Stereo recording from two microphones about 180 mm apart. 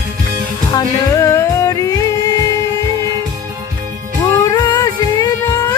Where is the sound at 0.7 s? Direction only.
20° left (ahead or behind).